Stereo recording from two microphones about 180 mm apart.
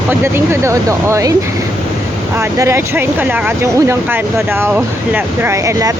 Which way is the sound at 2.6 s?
15° right (ahead or behind).